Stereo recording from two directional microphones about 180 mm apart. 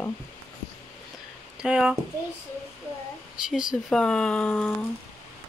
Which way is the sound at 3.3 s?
5° right (ahead or behind).